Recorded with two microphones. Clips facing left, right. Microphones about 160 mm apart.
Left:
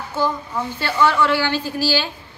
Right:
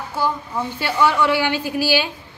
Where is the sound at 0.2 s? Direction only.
15° right (ahead or behind).